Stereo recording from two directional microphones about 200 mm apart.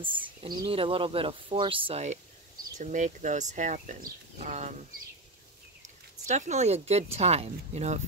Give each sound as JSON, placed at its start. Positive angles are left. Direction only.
{"t": 0.0, "sound": "speech", "side_deg": -25}
{"t": 6.2, "sound": "speech", "side_deg": -35}